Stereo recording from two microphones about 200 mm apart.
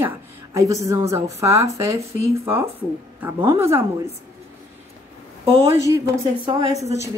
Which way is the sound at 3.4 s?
15° right (ahead or behind).